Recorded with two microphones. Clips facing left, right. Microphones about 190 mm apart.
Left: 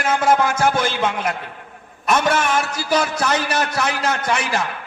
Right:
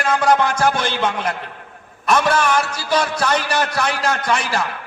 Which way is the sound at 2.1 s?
25° left (ahead or behind).